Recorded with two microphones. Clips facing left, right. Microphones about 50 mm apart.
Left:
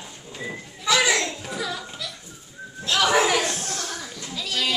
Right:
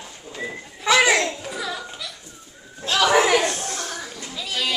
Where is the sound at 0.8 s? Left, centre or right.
Right.